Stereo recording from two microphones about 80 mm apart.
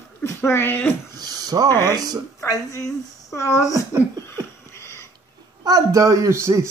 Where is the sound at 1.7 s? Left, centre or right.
Left.